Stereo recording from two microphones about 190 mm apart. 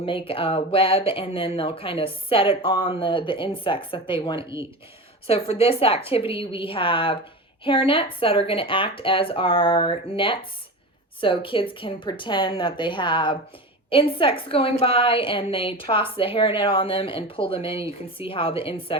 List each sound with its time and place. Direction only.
0.0 s speech: 30° left (ahead or behind)